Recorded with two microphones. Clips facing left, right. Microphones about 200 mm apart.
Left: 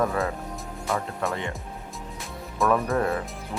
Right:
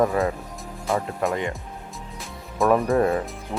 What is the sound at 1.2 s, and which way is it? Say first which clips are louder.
Speech: right 4 dB; 15° right (ahead or behind).